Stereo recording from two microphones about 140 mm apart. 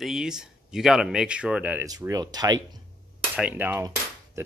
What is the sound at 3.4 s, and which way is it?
Speech, 15° right (ahead or behind).